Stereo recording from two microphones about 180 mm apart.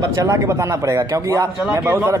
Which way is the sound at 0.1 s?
20° right (ahead or behind).